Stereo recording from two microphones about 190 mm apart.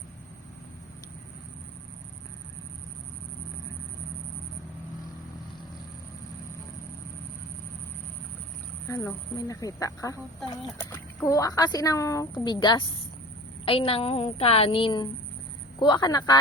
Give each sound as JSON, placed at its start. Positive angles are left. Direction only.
{"t": 8.9, "sound": "a woman's voice", "side_deg": 15}